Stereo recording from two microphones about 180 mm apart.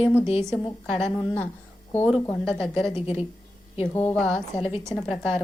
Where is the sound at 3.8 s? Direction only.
10° left (ahead or behind).